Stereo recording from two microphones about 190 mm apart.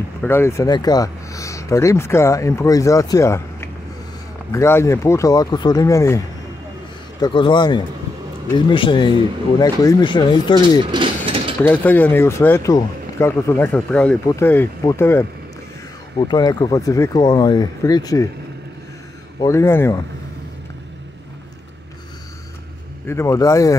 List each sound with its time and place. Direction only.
0.2 s speech: 10° left (ahead or behind)
10.9 s mechanisms: 25° right (ahead or behind)
11.6 s speech: 10° left (ahead or behind)
16.2 s speech: 20° left (ahead or behind)
19.4 s speech: 15° left (ahead or behind)
23.0 s speech: 15° left (ahead or behind)